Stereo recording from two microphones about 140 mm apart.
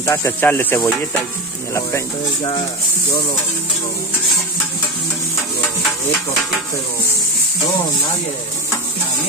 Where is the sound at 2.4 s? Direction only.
35° left (ahead or behind).